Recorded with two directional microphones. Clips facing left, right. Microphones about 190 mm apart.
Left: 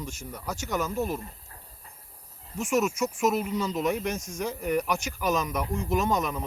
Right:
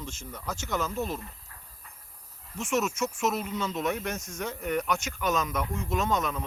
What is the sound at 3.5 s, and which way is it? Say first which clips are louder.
Speech: left 3 dB; 35° left (ahead or behind).